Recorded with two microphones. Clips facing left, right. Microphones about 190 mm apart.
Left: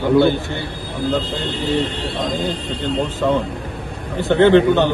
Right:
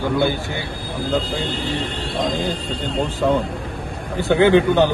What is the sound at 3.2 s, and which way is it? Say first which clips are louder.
Speech: right 1 dB; 10° right (ahead or behind).